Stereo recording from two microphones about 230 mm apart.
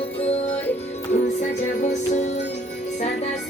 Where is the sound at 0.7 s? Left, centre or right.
Left.